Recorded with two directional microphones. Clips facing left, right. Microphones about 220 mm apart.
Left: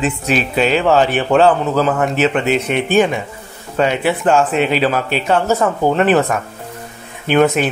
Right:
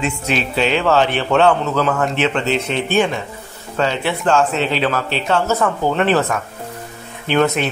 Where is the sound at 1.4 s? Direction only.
35° left (ahead or behind).